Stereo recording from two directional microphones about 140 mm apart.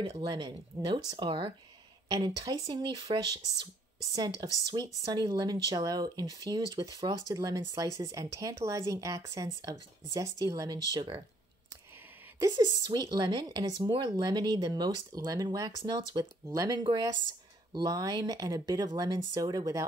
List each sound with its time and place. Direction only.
0.2 s speech: 30° right (ahead or behind)
12.4 s speech: 25° right (ahead or behind)